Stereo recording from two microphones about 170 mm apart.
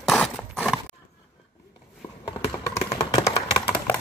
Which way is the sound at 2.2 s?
20° left (ahead or behind).